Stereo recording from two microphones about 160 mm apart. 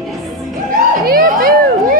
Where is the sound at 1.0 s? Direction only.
65° right (ahead or behind).